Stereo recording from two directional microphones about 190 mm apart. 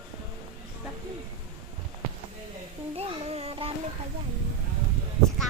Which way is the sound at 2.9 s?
30° right (ahead or behind).